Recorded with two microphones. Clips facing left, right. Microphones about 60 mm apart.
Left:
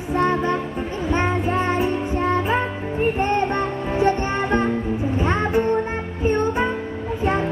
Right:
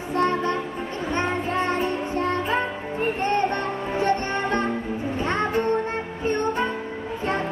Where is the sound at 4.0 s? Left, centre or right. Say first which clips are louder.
Left 4 dB; centre.